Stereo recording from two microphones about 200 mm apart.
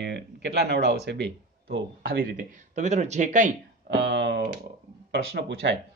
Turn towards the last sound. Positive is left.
turn(degrees=-60)  # may be behind; listen again after turning